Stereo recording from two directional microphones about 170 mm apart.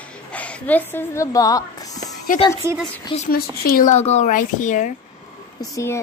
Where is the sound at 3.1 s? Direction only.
30° left (ahead or behind).